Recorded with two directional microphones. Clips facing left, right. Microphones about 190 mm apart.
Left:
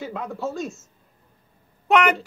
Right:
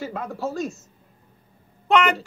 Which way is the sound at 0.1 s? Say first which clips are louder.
Even; centre (ahead or behind).